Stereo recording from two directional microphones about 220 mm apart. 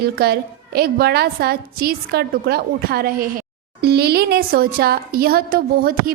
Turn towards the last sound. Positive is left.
turn(degrees=-40)  # may be behind; listen again after turning